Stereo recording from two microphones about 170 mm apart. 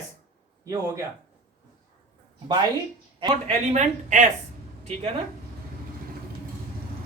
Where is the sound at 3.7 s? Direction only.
45° right (ahead or behind).